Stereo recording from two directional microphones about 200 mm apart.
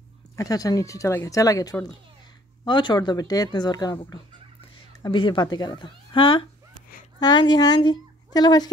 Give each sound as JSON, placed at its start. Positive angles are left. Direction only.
{"t": 0.4, "sound": "a woman's voice", "side_deg": 20}